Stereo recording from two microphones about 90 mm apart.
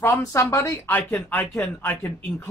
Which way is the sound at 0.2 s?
35° left (ahead or behind).